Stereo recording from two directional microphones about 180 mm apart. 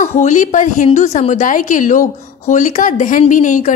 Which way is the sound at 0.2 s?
45° left (ahead or behind).